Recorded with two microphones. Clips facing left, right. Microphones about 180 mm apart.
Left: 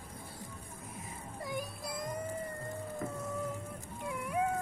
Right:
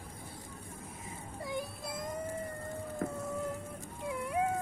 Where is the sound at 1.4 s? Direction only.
25° right (ahead or behind).